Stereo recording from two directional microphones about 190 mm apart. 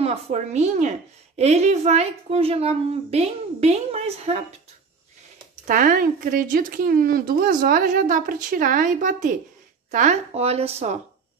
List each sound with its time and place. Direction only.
0.0 s a woman's voice: 35° right (ahead or behind)
5.7 s a woman's voice: 45° right (ahead or behind)